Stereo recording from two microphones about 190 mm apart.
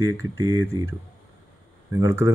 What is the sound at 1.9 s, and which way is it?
Speech, 15° right (ahead or behind).